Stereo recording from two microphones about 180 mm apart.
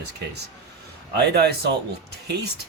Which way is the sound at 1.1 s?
65° right (ahead or behind).